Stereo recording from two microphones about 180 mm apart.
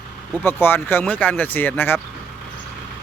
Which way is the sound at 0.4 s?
10° left (ahead or behind).